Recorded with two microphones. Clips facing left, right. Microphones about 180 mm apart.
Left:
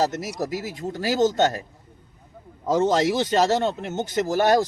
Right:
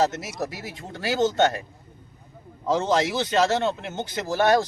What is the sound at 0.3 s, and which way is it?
Speech, 40° left (ahead or behind).